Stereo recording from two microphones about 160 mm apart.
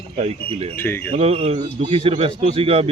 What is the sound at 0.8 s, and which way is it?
Speech, 15° left (ahead or behind).